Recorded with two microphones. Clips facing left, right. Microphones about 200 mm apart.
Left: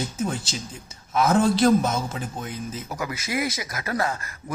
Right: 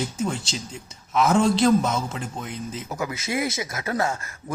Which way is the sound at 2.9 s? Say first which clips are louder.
Right 2 dB; 20° right (ahead or behind).